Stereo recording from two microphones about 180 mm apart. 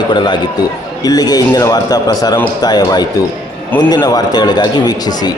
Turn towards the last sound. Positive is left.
turn(degrees=20)  # may be behind; listen again after turning